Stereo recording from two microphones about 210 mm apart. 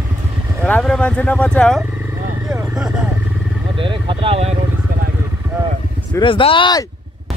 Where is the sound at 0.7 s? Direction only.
5° left (ahead or behind).